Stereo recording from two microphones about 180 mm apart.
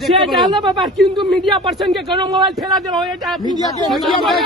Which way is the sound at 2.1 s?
25° right (ahead or behind).